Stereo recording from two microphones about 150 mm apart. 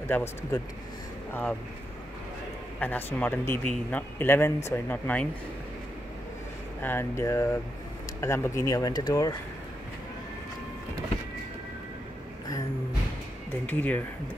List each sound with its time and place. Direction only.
0.1 s speech: 15° left (ahead or behind)
2.8 s speech: 10° left (ahead or behind)
6.8 s speech: 15° left (ahead or behind)
13.7 s speech: 10° left (ahead or behind)